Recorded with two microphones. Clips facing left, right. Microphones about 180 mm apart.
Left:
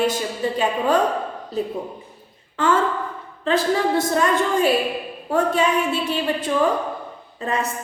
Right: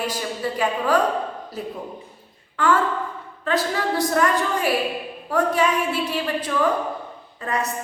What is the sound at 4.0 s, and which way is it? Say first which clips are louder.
A woman's voice: left 1 dB; 25° left (ahead or behind).